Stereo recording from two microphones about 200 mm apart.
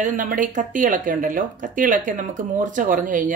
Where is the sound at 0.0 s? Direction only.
40° right (ahead or behind).